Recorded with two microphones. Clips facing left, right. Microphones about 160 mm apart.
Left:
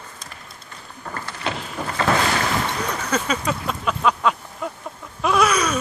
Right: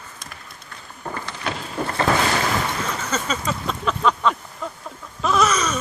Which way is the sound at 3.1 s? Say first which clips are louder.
Left 4 dB; 10° left (ahead or behind).